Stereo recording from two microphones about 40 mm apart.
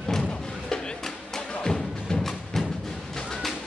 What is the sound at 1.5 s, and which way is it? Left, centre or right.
Music, centre.